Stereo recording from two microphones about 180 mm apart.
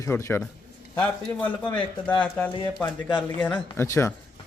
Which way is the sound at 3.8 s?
15° left (ahead or behind).